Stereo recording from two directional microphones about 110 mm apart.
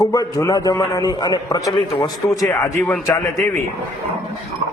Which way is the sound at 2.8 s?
10° left (ahead or behind).